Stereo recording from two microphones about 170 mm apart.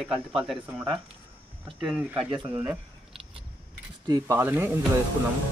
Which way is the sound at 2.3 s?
25° right (ahead or behind).